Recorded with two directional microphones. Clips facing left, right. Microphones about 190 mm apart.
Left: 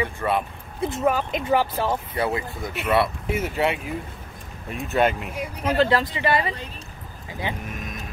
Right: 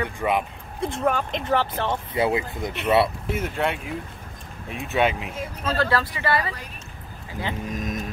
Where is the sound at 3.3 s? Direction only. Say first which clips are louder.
Left 2 dB; 5° left (ahead or behind).